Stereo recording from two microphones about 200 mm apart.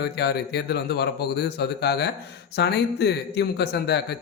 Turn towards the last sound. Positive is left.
turn(degrees=55)  # may be behind; listen again after turning